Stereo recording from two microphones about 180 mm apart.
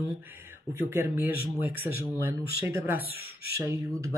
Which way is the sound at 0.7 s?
15° right (ahead or behind).